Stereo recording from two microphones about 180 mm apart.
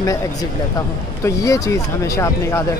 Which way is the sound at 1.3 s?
20° left (ahead or behind).